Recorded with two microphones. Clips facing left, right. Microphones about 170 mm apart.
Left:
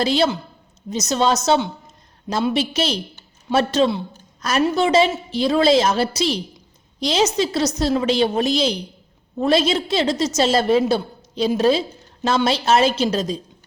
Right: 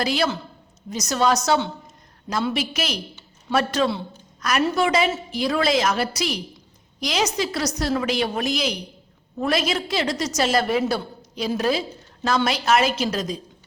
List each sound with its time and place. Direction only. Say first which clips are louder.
0.0 s a woman's voice: left 4 dB; 25° left (ahead or behind)